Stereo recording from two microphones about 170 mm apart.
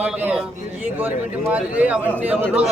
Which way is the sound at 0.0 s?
5° right (ahead or behind).